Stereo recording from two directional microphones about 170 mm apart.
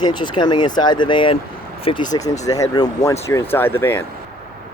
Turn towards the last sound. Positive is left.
turn(degrees=15)  # may be behind; listen again after turning